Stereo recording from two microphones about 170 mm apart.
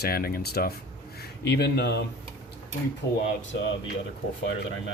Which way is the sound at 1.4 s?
85° left.